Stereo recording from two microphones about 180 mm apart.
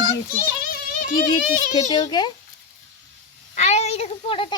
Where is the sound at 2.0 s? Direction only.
25° left (ahead or behind).